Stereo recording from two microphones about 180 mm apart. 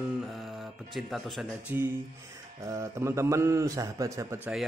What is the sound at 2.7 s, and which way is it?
A man's voice, 15° right (ahead or behind).